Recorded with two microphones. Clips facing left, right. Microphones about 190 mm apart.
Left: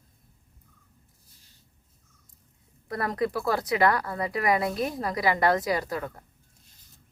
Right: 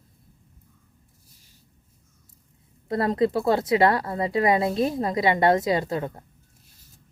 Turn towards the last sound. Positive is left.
turn(degrees=-25)  # may be behind; listen again after turning